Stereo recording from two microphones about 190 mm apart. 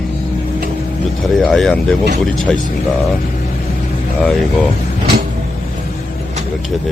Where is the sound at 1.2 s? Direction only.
Centre (ahead or behind).